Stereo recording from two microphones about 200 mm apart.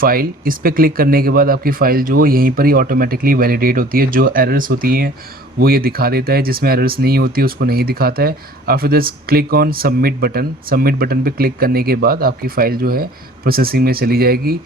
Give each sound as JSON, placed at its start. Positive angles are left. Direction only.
{"t": 0.0, "sound": "speech", "side_deg": -45}